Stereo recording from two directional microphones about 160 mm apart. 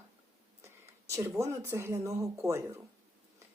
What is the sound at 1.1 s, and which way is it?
Speech, 20° right (ahead or behind).